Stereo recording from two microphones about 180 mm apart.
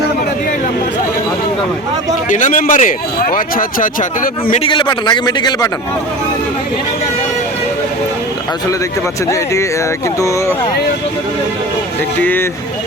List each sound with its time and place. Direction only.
2.3 s speech: 45° left (ahead or behind)
4.6 s a man's voice: 25° left (ahead or behind)
10.2 s speech: 15° left (ahead or behind)
12.2 s speech: 10° left (ahead or behind)